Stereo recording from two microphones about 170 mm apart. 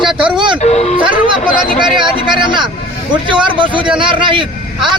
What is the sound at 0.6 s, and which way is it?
Speech, 40° left (ahead or behind).